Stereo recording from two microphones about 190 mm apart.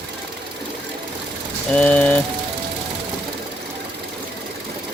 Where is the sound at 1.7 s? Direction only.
5° left (ahead or behind).